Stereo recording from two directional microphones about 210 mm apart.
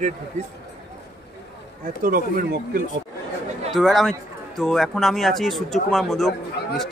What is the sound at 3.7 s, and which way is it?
A man's voice, centre (ahead or behind).